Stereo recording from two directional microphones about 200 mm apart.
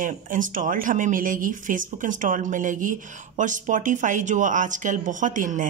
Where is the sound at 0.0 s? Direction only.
40° right (ahead or behind).